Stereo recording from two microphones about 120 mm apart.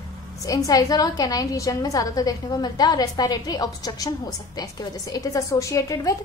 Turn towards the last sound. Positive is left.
turn(degrees=30)  # may be behind; listen again after turning